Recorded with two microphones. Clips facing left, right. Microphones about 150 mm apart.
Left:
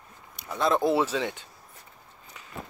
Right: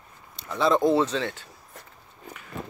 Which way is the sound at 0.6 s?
Centre (ahead or behind).